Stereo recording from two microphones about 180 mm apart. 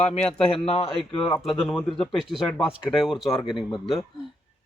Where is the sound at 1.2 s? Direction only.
5° left (ahead or behind).